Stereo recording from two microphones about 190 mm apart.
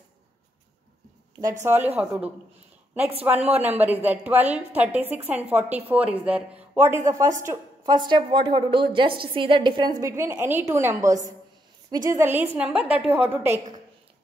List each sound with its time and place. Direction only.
1.6 s a woman's voice: 10° right (ahead or behind)